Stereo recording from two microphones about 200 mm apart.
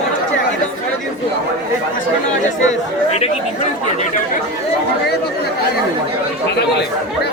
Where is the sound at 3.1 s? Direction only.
30° left (ahead or behind).